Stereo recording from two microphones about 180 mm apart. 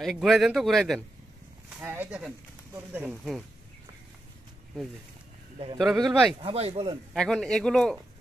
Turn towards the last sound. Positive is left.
turn(degrees=5)  # may be behind; listen again after turning